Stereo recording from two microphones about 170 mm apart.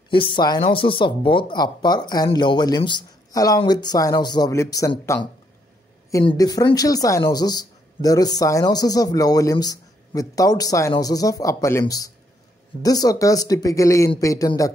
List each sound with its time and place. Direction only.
0.1 s speech: 30° left (ahead or behind)
6.2 s speech: 20° left (ahead or behind)